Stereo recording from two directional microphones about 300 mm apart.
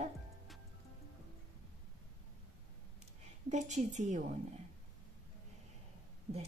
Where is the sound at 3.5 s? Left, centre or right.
Right.